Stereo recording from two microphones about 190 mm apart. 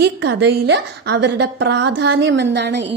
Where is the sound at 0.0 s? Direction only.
65° right (ahead or behind).